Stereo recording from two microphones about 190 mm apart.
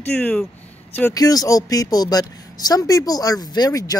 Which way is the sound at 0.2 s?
5° left (ahead or behind).